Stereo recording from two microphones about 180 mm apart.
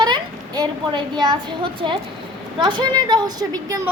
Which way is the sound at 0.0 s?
25° right (ahead or behind).